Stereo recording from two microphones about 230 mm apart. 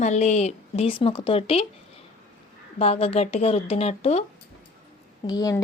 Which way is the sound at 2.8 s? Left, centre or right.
Left.